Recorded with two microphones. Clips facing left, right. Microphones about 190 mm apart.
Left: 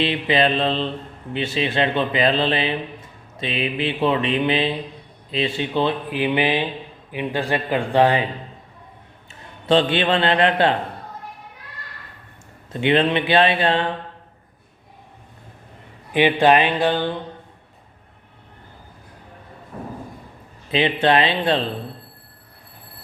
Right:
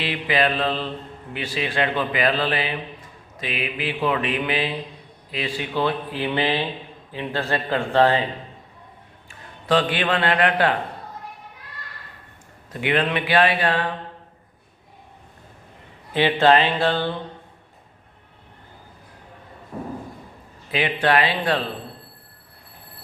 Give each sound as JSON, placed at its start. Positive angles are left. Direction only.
{"t": 0.0, "sound": "speech", "side_deg": 25}
{"t": 9.6, "sound": "speech", "side_deg": 25}
{"t": 12.7, "sound": "speech", "side_deg": 25}
{"t": 16.1, "sound": "speech", "side_deg": 15}
{"t": 20.7, "sound": "speech", "side_deg": 25}